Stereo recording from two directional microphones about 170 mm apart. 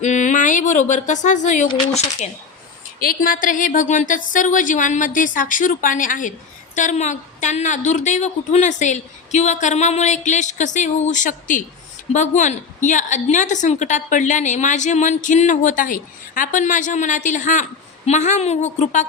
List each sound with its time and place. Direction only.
0.0 s speech: 45° left (ahead or behind)
3.0 s a woman's voice: 60° left (ahead or behind)